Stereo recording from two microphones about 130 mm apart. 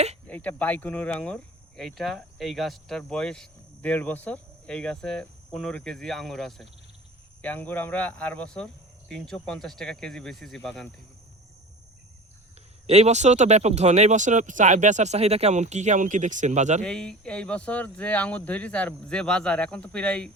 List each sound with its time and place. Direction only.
0.3 s speech: 10° left (ahead or behind)
7.4 s speech: 15° left (ahead or behind)
12.9 s speech: 60° right (ahead or behind)
16.8 s speech: 5° left (ahead or behind)